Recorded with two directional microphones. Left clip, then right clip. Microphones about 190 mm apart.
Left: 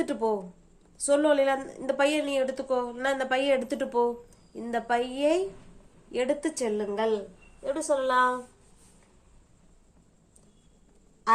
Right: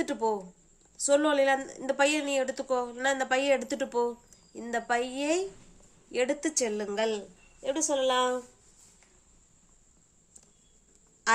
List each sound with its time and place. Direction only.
0.0 s a woman's voice: 15° right (ahead or behind); by 8.1 s 40° right (ahead or behind)
11.3 s quack: 40° right (ahead or behind)